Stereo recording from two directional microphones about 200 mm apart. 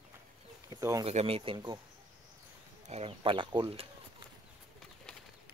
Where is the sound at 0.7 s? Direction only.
15° right (ahead or behind).